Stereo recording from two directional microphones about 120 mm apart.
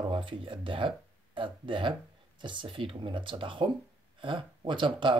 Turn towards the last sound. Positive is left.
turn(degrees=-45)  # may be behind; listen again after turning